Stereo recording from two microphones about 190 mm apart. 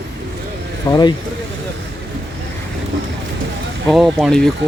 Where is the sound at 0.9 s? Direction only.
20° left (ahead or behind).